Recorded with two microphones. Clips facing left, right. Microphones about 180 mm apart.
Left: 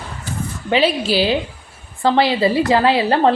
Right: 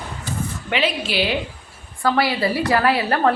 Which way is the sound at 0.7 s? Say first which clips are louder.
Left 7 dB; 35° left (ahead or behind).